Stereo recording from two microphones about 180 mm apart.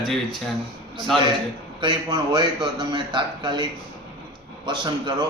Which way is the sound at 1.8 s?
25° right (ahead or behind).